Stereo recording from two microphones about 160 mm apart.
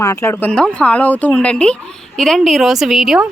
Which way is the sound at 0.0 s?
20° left (ahead or behind).